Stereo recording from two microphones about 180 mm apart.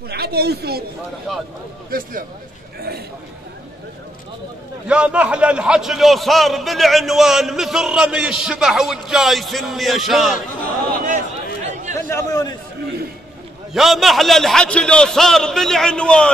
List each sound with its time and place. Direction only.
0.1 s speech: 60° right (ahead or behind)
1.3 s a man's voice: 5° left (ahead or behind)
1.9 s speech: 50° right (ahead or behind)
4.8 s a man's voice: 5° right (ahead or behind)
12.1 s a man's voice: 15° left (ahead or behind)
13.7 s a man's voice: centre (ahead or behind)